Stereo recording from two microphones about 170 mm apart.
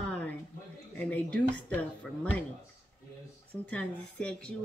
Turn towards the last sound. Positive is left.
turn(degrees=5)  # may be behind; listen again after turning